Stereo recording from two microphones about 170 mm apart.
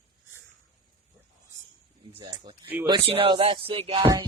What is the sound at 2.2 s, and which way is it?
Speech, 30° right (ahead or behind).